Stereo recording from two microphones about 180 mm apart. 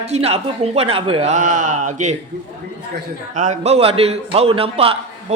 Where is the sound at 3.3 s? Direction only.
40° right (ahead or behind).